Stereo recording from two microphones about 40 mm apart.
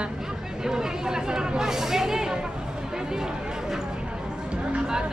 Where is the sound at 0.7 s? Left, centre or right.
Centre.